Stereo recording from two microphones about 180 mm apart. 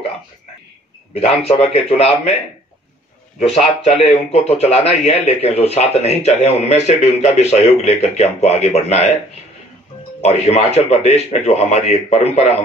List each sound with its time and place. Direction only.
1.2 s a man's voice: 35° left (ahead or behind)
3.3 s a man's voice: 35° left (ahead or behind)
10.2 s a man's voice: 35° left (ahead or behind)